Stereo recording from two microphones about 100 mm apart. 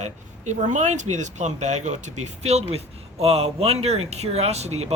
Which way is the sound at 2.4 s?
90° right.